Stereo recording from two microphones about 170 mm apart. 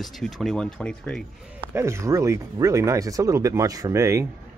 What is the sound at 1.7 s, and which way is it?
Speech, 15° right (ahead or behind).